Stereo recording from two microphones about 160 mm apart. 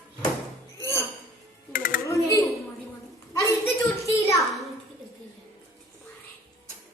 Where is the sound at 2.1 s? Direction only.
20° left (ahead or behind).